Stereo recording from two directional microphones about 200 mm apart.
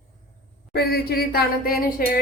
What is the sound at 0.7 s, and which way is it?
A woman's voice, 50° left (ahead or behind).